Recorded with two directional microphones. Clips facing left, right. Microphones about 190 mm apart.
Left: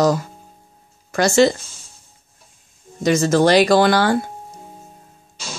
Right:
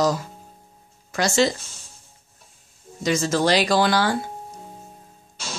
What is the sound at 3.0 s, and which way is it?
Speech, 55° left (ahead or behind).